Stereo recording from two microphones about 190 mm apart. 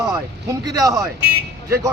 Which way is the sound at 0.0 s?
20° right (ahead or behind).